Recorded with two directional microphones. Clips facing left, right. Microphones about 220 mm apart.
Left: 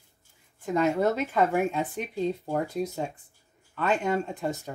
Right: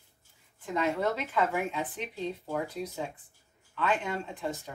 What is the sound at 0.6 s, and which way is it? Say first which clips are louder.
Speech: left 5 dB; 45° left (ahead or behind).